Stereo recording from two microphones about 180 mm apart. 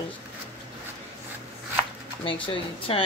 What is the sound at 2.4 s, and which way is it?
Speech, 30° left (ahead or behind).